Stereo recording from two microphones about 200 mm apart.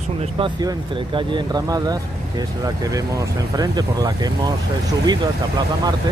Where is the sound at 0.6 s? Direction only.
20° right (ahead or behind).